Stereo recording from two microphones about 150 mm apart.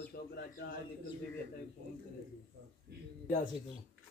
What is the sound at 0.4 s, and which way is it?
Speech, 80° left.